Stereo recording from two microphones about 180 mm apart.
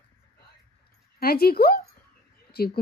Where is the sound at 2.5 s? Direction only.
60° left (ahead or behind).